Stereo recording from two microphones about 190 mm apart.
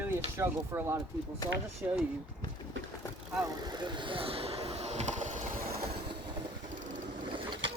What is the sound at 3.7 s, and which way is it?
Vehicle, 25° right (ahead or behind).